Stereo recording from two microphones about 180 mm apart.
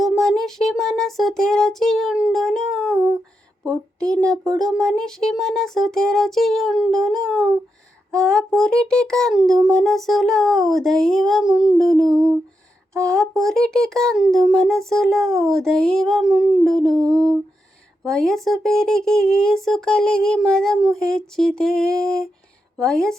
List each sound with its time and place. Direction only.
0.0 s a sound: centre (ahead or behind)
3.7 s speech: 5° left (ahead or behind)
12.9 s speech: 15° right (ahead or behind)
13.1 s speech: centre (ahead or behind)